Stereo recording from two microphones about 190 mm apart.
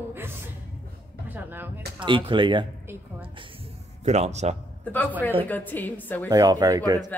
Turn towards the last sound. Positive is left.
turn(degrees=-20)  # may be behind; listen again after turning